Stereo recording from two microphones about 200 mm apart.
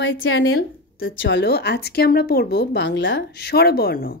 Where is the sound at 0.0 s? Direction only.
65° left (ahead or behind); by 4.2 s 50° left (ahead or behind).